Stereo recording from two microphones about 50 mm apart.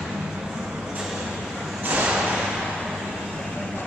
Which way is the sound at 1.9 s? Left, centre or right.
Right.